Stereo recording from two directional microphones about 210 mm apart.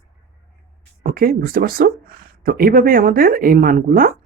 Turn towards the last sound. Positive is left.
turn(degrees=-45)  # may be behind; listen again after turning